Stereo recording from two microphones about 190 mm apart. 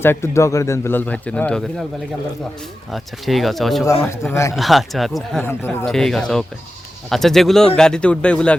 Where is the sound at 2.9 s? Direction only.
Centre (ahead or behind).